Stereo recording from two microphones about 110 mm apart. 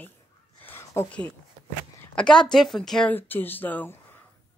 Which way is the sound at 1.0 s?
10° left (ahead or behind).